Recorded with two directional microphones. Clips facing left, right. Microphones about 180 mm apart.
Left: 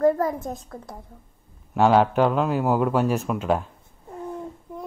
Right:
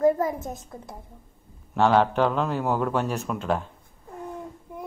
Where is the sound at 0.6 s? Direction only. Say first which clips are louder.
Left 2 dB; 20° right (ahead or behind).